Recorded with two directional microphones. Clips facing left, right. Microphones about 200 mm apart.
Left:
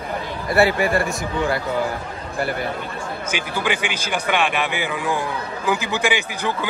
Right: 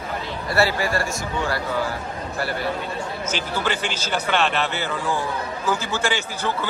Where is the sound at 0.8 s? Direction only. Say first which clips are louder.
Left 4 dB; 20° left (ahead or behind).